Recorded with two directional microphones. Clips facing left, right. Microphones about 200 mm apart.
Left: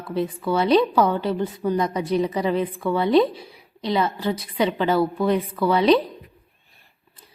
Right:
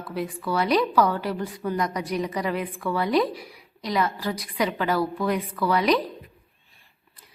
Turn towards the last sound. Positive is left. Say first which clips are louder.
# left 4 dB
turn(degrees=25)  # may be behind; listen again after turning